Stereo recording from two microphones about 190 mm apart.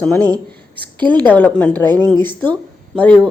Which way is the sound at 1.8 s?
20° right (ahead or behind).